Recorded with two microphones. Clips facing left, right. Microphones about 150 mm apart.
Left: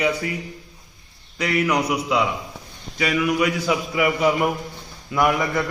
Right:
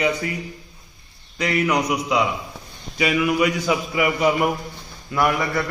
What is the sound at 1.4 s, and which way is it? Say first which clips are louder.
Speech: even; 5° left (ahead or behind).